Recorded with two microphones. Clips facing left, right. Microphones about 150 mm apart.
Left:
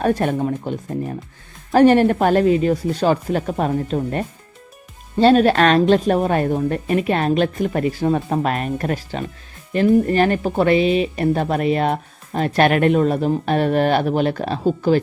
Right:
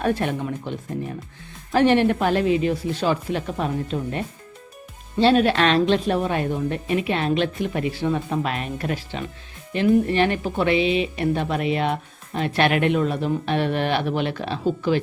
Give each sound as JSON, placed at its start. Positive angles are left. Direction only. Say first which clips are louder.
{"t": 0.0, "sound": "speech", "louder": "left 4 dB", "side_deg": 40}
{"t": 1.7, "sound": "speech", "louder": "left 5 dB", "side_deg": 45}